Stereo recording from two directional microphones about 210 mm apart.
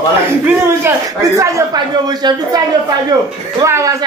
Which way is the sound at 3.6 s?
15° right (ahead or behind).